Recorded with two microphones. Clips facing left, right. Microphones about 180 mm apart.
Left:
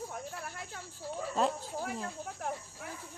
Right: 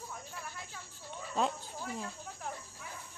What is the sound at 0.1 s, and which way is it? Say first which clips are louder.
Snake: left 4 dB; 65° left (ahead or behind).